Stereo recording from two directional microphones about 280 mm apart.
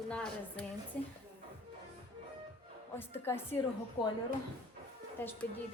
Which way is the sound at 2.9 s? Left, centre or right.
Centre.